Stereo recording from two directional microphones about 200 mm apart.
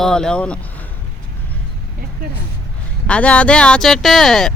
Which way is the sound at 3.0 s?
5° left (ahead or behind).